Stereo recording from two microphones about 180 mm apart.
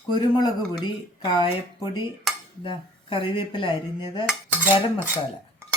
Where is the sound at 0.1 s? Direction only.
25° left (ahead or behind).